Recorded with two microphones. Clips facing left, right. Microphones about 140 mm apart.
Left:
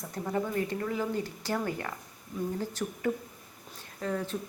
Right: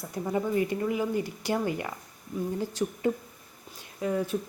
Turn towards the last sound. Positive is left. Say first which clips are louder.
# right 4 dB
turn(degrees=-10)  # may be behind; listen again after turning